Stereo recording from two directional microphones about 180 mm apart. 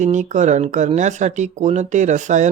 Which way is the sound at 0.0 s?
40° right (ahead or behind).